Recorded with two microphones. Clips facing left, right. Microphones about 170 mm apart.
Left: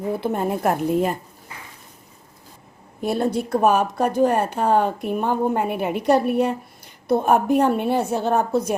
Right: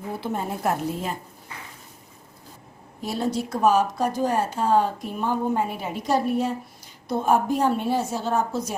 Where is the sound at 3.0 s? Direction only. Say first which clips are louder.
Left 4 dB; 55° left (ahead or behind).